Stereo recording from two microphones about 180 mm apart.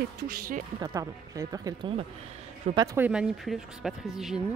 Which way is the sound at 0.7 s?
15° right (ahead or behind).